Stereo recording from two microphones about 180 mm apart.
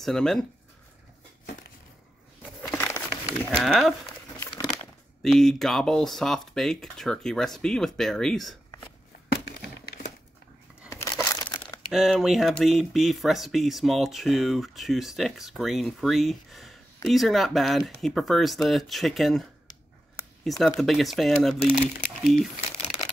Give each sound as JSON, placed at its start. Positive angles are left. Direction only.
{"t": 0.0, "sound": "speech", "side_deg": 0}
{"t": 2.6, "sound": "a sound", "side_deg": 15}
{"t": 3.4, "sound": "speech", "side_deg": 0}
{"t": 4.0, "sound": "crumpling", "side_deg": 25}
{"t": 5.2, "sound": "speech", "side_deg": 0}
{"t": 9.3, "sound": "a sound", "side_deg": 65}
{"t": 10.9, "sound": "crumpling", "side_deg": 15}
{"t": 11.9, "sound": "speech", "side_deg": 0}
{"t": 20.4, "sound": "speech", "side_deg": 0}